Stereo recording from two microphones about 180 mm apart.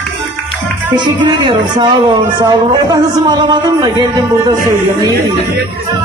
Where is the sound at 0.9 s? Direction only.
25° right (ahead or behind).